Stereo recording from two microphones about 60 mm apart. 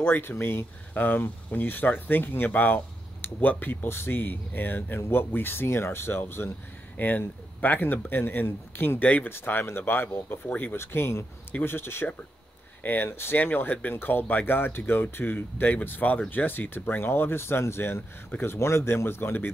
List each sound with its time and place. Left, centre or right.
0.0 s speech: left
7.0 s speech: left
9.3 s speech: left
10.8 s speech: left
12.8 s speech: left